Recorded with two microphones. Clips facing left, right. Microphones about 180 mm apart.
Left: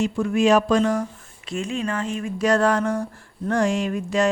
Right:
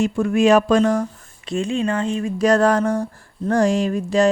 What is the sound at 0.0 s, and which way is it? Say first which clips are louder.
A woman's voice: right 3 dB; 55° right (ahead or behind).